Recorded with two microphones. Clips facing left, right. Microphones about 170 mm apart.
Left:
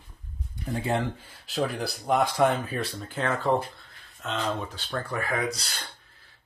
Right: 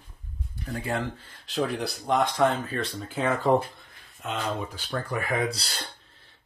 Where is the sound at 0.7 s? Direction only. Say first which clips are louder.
Left 3 dB; 25° left (ahead or behind).